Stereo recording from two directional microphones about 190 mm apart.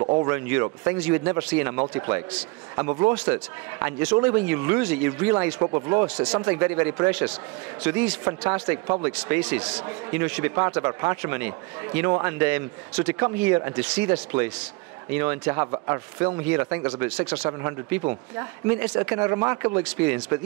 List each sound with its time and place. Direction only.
0.0 s a sound: 30° right (ahead or behind)
0.3 s speech: 10° right (ahead or behind)
6.0 s speech: 5° right (ahead or behind)